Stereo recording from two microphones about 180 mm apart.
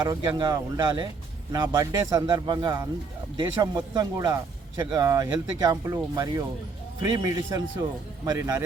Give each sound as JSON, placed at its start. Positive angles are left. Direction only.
{"t": 0.0, "sound": "speech", "side_deg": -25}